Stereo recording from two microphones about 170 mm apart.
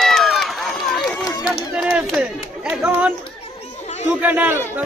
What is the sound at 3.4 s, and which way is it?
Chatter, 40° left (ahead or behind).